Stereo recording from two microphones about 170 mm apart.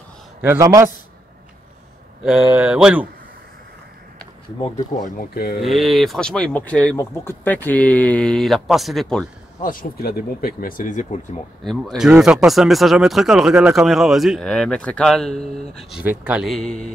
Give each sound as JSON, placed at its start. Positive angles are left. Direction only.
{"t": 0.4, "sound": "a man's voice", "side_deg": -15}
{"t": 2.2, "sound": "speech", "side_deg": -5}
{"t": 5.0, "sound": "speech", "side_deg": 55}
{"t": 5.6, "sound": "speech", "side_deg": 0}
{"t": 9.6, "sound": "speech", "side_deg": 55}
{"t": 11.6, "sound": "speech", "side_deg": 0}
{"t": 15.9, "sound": "speech", "side_deg": -10}